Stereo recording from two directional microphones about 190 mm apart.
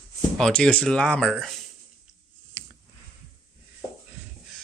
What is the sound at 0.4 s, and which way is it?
Speech, 5° left (ahead or behind).